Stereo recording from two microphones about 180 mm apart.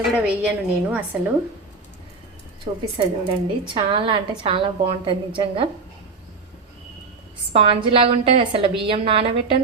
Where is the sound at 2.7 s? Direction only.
35° right (ahead or behind).